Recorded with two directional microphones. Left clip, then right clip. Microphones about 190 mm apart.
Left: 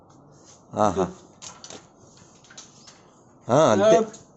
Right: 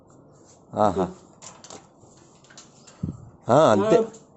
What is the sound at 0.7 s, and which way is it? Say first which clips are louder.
Speech: even; 5° right (ahead or behind).